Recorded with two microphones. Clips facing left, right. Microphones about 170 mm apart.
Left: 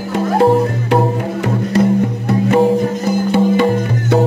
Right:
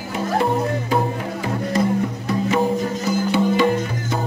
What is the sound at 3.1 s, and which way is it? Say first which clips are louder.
Music: left 4 dB; 55° left (ahead or behind).